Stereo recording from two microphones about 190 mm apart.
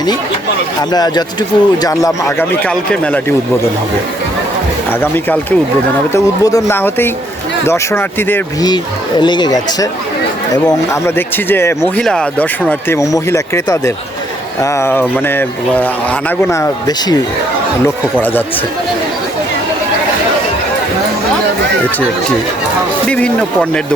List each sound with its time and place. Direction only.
0.8 s speech: 20° left (ahead or behind)
4.9 s speech: 10° left (ahead or behind)
23.0 s speech: 5° left (ahead or behind)